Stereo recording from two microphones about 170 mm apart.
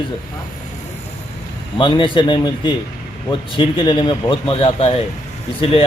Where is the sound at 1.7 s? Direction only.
25° left (ahead or behind).